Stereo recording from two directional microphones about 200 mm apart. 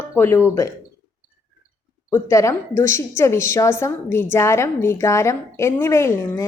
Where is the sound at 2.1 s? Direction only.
15° left (ahead or behind).